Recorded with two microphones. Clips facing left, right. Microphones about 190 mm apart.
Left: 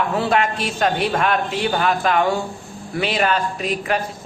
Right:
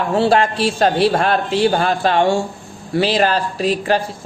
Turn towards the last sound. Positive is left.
turn(degrees=-30)  # may be behind; listen again after turning